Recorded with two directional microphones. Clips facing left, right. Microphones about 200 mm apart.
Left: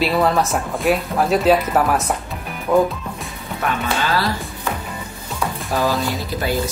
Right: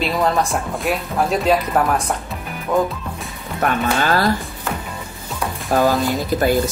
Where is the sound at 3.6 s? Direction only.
50° right (ahead or behind).